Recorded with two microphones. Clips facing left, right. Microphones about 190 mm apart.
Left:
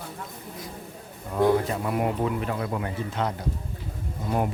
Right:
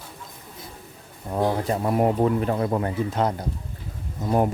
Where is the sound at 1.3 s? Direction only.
35° right (ahead or behind).